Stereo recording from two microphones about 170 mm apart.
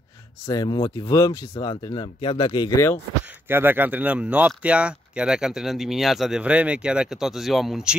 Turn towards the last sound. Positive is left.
turn(degrees=-5)  # may be behind; listen again after turning